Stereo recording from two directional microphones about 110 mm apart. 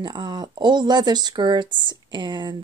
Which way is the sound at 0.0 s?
40° right (ahead or behind).